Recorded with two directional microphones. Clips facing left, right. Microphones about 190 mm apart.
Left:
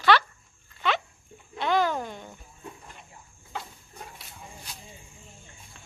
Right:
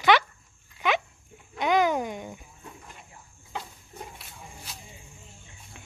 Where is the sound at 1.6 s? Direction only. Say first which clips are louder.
Right 2 dB; 15° right (ahead or behind).